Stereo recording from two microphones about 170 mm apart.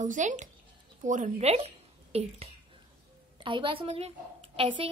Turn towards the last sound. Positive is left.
turn(degrees=-30)  # may be behind; listen again after turning